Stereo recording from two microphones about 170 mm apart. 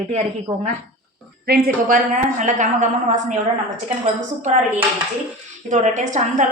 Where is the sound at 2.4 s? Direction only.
45° right (ahead or behind).